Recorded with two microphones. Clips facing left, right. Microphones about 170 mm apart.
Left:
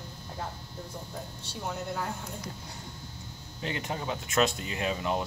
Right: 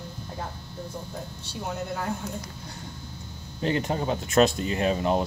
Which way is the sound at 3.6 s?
40° right (ahead or behind).